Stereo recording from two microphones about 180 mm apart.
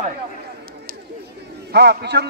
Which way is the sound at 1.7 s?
65° right (ahead or behind).